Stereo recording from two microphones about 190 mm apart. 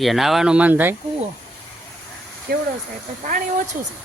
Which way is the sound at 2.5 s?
55° right (ahead or behind).